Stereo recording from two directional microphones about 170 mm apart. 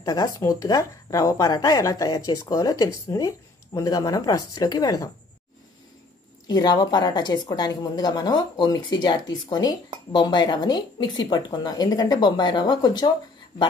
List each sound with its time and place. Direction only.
0.0 s a woman's voice: 20° left (ahead or behind)
6.4 s a woman's voice: 25° left (ahead or behind)